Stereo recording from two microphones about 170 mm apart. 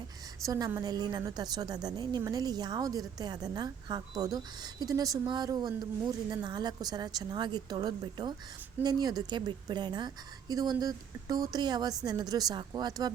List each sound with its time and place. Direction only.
0.4 s a woman's voice: 20° right (ahead or behind)